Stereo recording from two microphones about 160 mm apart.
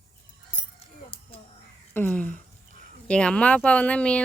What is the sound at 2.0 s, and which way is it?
Speech, 10° left (ahead or behind).